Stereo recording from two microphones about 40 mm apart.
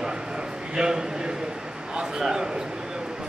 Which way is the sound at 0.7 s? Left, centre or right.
Centre.